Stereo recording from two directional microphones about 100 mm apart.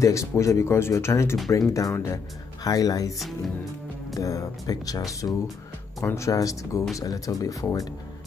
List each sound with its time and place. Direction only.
0.0 s speech: 30° left (ahead or behind)
3.2 s speech: centre (ahead or behind)
4.2 s speech: 35° left (ahead or behind)